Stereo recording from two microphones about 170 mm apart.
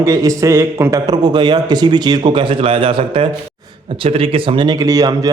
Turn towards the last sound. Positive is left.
turn(degrees=-20)  # may be behind; listen again after turning